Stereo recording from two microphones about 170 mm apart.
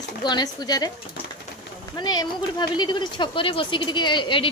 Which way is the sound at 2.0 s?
25° left (ahead or behind).